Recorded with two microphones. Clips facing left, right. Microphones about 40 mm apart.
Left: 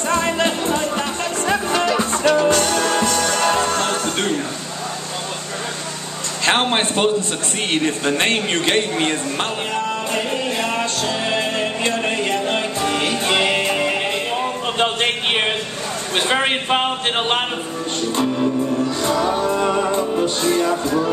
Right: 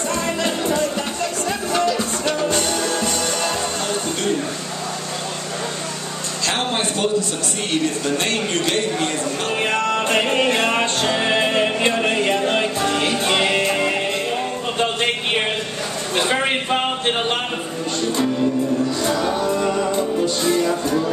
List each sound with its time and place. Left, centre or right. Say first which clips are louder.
0.1 s music: left 5 dB; left
6.4 s a man's voice: left 5 dB; left
9.7 s music: right 3 dB; right; by 13.9 s centre
14.8 s a sound: left 1 dB; left
16.4 s a sound: left 1 dB; left
19.2 s music: left 1 dB; left